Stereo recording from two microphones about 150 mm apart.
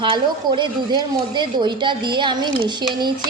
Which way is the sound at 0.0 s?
30° right (ahead or behind).